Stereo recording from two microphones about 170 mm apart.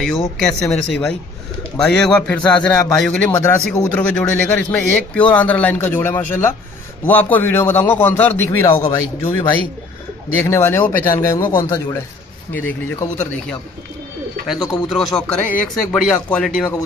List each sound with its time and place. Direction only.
0.0 s speech: centre (ahead or behind)
10.4 s speech: 15° left (ahead or behind)
14.5 s speech: centre (ahead or behind)